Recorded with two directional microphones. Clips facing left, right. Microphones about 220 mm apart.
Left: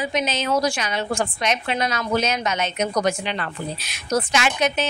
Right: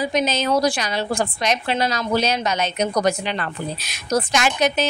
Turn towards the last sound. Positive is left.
turn(degrees=-40)  # may be behind; listen again after turning